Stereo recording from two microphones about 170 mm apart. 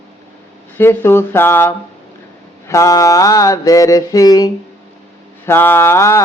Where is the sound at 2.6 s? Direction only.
20° left (ahead or behind).